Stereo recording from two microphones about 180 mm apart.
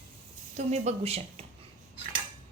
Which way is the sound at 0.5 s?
40° right (ahead or behind).